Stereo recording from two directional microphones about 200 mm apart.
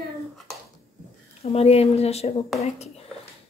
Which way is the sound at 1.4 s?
30° left (ahead or behind).